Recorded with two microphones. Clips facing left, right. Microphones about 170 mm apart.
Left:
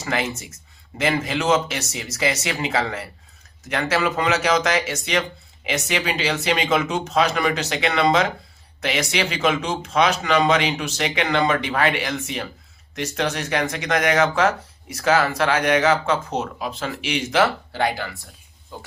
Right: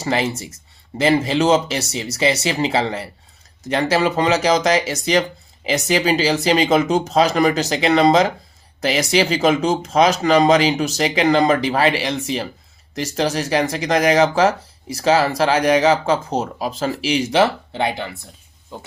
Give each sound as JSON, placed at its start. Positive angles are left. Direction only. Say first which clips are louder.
{"t": 0.0, "sound": "speech", "louder": "right 5 dB", "side_deg": -30}